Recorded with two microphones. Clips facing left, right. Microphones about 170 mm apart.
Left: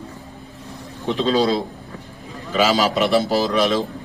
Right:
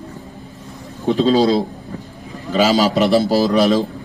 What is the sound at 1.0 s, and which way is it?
A man's voice, 40° right (ahead or behind).